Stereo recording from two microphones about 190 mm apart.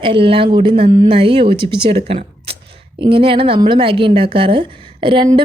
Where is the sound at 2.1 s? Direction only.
30° right (ahead or behind).